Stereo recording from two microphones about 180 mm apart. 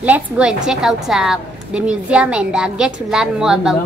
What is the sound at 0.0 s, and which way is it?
A woman's voice, 5° right (ahead or behind).